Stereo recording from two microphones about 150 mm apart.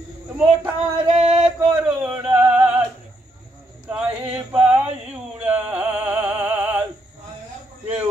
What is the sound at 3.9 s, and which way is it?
Male singing, 10° right (ahead or behind).